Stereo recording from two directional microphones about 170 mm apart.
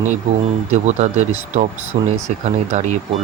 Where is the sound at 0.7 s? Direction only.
45° right (ahead or behind).